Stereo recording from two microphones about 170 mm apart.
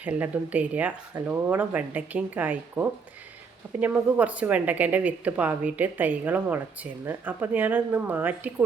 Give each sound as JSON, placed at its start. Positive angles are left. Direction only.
{"t": 0.0, "sound": "speech", "side_deg": -10}